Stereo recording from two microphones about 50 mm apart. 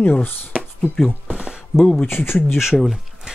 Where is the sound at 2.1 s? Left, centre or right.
Left.